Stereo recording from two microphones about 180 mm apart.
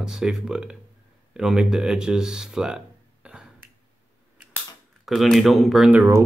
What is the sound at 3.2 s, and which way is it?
Finger snapping, 5° right (ahead or behind).